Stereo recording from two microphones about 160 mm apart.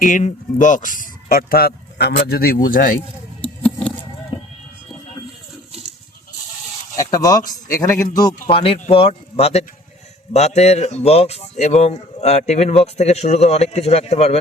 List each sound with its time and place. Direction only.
0.0 s speech: 50° left (ahead or behind); by 2.6 s 75° left (ahead or behind)
2.6 s speech: 60° left (ahead or behind)
3.6 s vehicle: 10° left (ahead or behind)
6.9 s a man's voice: 20° left (ahead or behind); by 14.3 s 40° left (ahead or behind)